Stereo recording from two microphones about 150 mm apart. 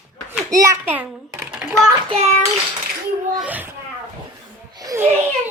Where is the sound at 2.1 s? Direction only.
45° right (ahead or behind).